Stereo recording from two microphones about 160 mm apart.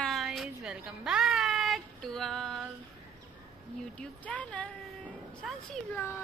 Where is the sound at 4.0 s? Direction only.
10° left (ahead or behind).